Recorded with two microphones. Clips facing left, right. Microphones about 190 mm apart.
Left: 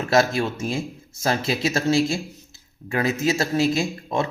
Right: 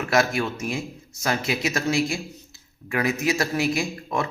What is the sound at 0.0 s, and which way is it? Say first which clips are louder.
Speech: left 2 dB; 25° left (ahead or behind).